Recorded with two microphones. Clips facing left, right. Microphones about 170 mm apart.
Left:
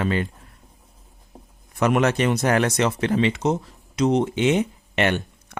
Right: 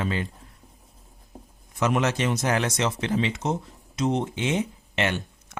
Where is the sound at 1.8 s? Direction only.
60° left (ahead or behind).